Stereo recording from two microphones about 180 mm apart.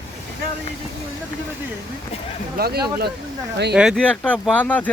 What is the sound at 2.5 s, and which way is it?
Speech, 60° right (ahead or behind).